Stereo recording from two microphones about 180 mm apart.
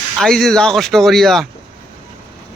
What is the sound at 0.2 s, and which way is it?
Speech, centre (ahead or behind).